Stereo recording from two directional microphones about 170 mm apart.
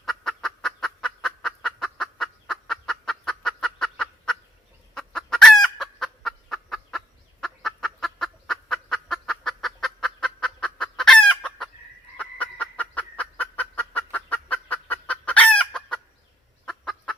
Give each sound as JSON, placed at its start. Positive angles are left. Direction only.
{"t": 0.0, "sound": "fowl", "side_deg": 0}
{"t": 12.1, "sound": "turkey", "side_deg": 10}
{"t": 16.6, "sound": "fowl", "side_deg": 5}